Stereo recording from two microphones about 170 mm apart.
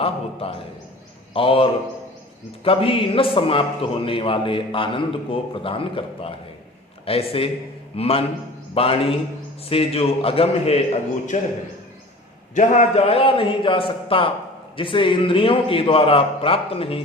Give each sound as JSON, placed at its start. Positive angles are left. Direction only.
{"t": 0.0, "sound": "a sound", "side_deg": 35}
{"t": 1.3, "sound": "a man's voice", "side_deg": 35}
{"t": 11.3, "sound": "a man's voice", "side_deg": 45}
{"t": 12.5, "sound": "a man's voice", "side_deg": 45}